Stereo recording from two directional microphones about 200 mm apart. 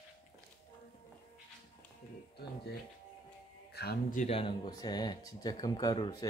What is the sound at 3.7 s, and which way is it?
Speech, 55° left (ahead or behind).